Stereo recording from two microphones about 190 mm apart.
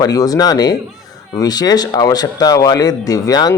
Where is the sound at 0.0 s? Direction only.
20° left (ahead or behind).